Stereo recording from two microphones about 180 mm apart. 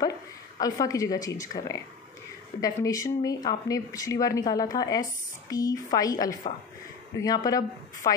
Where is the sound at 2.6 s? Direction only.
20° left (ahead or behind).